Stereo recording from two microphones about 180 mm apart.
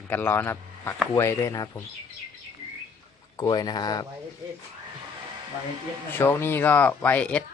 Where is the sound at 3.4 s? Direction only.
20° left (ahead or behind).